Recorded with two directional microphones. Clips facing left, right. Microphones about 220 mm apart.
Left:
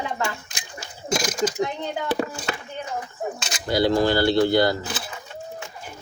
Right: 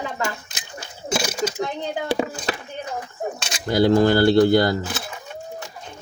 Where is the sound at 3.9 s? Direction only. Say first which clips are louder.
Right 5 dB; 50° right (ahead or behind).